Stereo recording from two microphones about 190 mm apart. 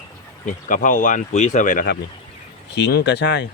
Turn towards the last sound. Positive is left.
turn(degrees=60)  # may be behind; listen again after turning